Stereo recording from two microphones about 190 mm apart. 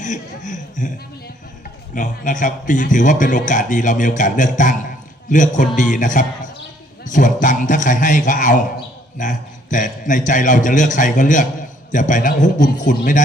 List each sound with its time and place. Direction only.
0.0 s speech: 40° left (ahead or behind)
2.0 s a man's voice: 40° left (ahead or behind)